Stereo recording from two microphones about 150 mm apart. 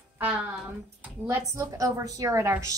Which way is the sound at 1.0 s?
20° right (ahead or behind).